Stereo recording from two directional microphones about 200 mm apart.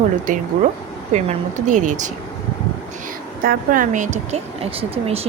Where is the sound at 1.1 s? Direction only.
35° right (ahead or behind).